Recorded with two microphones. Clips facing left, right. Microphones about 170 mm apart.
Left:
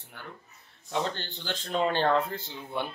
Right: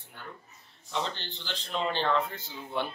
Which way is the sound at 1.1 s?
45° left (ahead or behind).